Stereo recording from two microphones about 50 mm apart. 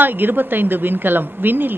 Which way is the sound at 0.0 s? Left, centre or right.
Right.